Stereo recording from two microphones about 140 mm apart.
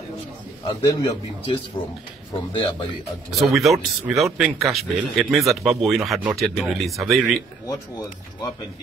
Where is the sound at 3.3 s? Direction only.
Centre (ahead or behind).